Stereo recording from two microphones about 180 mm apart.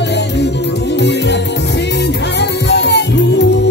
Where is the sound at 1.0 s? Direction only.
70° left (ahead or behind).